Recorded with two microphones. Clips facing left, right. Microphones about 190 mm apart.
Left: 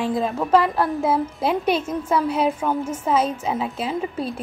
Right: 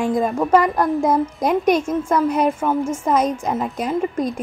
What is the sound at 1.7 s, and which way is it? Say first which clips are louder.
Speech: right 4 dB; 15° right (ahead or behind).